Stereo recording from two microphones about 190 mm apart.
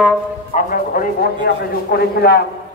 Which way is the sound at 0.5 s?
45° left (ahead or behind).